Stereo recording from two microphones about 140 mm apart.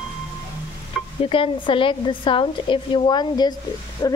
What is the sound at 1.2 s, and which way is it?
A woman's voice, 40° left (ahead or behind).